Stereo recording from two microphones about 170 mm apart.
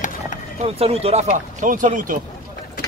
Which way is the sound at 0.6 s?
35° right (ahead or behind).